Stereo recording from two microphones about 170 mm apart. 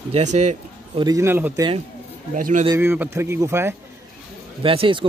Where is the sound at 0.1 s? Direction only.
45° right (ahead or behind).